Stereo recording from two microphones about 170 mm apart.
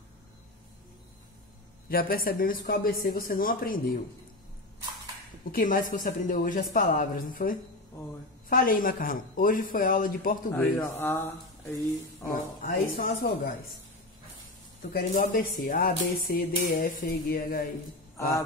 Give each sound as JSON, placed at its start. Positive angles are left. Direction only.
{"t": 1.9, "sound": "speech", "side_deg": 60}
{"t": 5.5, "sound": "speech", "side_deg": 55}
{"t": 10.5, "sound": "speech", "side_deg": 10}
{"t": 12.3, "sound": "speech", "side_deg": 55}
{"t": 14.9, "sound": "speech", "side_deg": 60}